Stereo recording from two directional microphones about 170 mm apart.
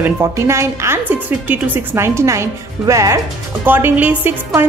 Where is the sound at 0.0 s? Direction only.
15° right (ahead or behind).